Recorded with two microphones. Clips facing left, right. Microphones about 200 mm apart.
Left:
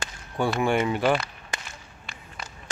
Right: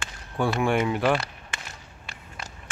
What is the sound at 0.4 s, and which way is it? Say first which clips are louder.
Speech: even; centre (ahead or behind).